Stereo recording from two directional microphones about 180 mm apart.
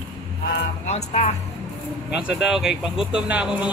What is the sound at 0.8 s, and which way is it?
Speech, 40° left (ahead or behind).